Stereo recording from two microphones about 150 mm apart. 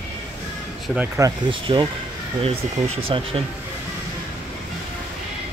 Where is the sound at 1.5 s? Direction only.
35° right (ahead or behind).